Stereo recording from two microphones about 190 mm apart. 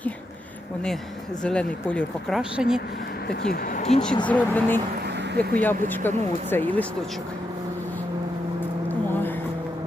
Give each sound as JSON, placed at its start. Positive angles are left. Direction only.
{"t": 1.5, "sound": "speech", "side_deg": 5}
{"t": 3.7, "sound": "speech", "side_deg": 40}
{"t": 4.3, "sound": "speech", "side_deg": 10}